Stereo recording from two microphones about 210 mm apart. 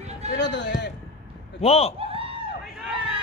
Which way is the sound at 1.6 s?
30° left (ahead or behind).